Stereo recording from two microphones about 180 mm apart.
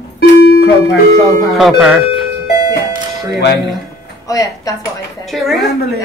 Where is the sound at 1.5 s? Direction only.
Centre (ahead or behind).